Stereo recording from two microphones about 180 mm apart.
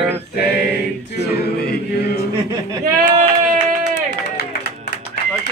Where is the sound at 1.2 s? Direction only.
60° left (ahead or behind).